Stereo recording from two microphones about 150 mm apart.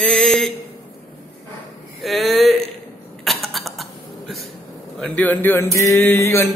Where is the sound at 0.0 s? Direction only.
5° left (ahead or behind).